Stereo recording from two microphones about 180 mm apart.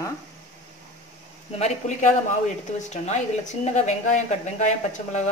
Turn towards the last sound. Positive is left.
turn(degrees=40)  # may be behind; listen again after turning